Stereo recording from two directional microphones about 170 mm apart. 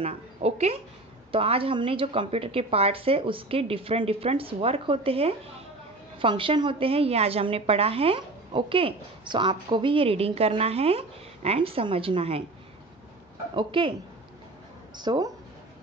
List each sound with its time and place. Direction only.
0.0 s a woman's voice: 40° right (ahead or behind)
13.6 s speech: 30° right (ahead or behind)
15.0 s speech: 25° right (ahead or behind)